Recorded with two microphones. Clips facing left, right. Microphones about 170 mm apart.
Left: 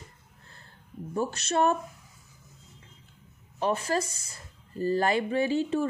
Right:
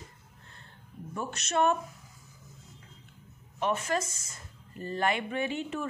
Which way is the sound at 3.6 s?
35° left (ahead or behind).